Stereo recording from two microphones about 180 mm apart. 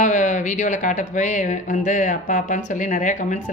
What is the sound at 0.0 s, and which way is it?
Speech, 45° left (ahead or behind).